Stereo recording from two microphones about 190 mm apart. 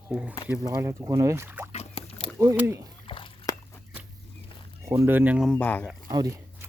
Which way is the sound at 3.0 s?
25° left (ahead or behind).